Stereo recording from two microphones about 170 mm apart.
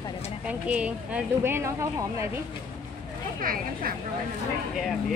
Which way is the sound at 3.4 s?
55° right (ahead or behind).